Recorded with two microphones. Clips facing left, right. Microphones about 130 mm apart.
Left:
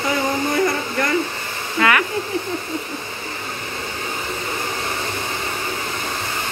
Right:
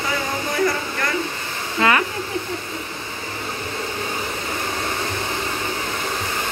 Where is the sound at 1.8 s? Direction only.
25° right (ahead or behind).